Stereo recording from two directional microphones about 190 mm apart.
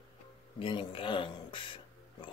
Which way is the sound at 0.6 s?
25° left (ahead or behind).